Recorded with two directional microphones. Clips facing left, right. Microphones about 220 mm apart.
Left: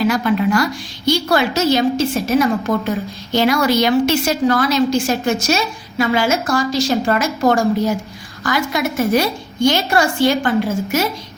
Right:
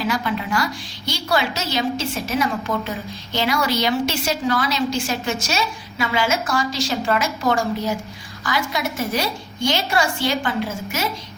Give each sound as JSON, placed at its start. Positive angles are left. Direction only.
{"t": 0.1, "sound": "a woman's voice", "side_deg": 50}